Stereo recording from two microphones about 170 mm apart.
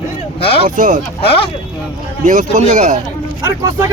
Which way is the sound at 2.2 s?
45° right (ahead or behind).